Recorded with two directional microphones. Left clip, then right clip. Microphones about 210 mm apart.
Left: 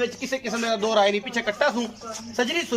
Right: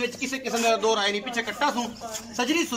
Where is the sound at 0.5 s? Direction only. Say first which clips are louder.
Right 3 dB; 40° left (ahead or behind).